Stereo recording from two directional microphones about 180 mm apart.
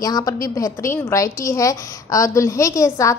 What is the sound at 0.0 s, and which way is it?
A woman's voice, 20° left (ahead or behind).